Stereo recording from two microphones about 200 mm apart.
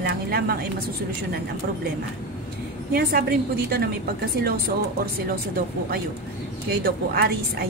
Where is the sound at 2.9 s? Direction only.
50° right (ahead or behind).